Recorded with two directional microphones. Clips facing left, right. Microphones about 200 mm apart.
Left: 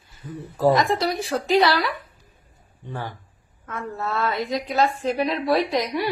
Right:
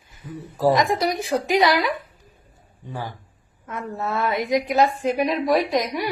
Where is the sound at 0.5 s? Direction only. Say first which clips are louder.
Even; 10° right (ahead or behind).